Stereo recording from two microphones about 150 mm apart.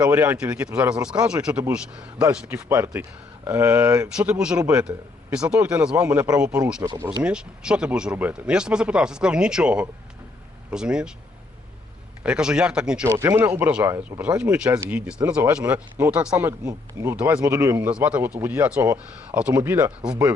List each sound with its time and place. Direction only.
0.0 s speech: 15° right (ahead or behind)
2.5 s speech: 20° right (ahead or behind)
4.2 s speech: 5° right (ahead or behind)
6.8 s speech: 25° right (ahead or behind)
7.2 s speech: 5° right (ahead or behind)
12.2 s speech: 5° right (ahead or behind)
13.1 s speech: 20° right (ahead or behind)
17.2 s speech: 10° right (ahead or behind)
17.4 s speech: 20° right (ahead or behind)